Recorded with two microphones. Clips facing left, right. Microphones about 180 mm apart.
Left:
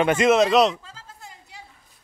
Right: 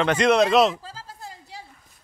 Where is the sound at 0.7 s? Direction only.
35° right (ahead or behind).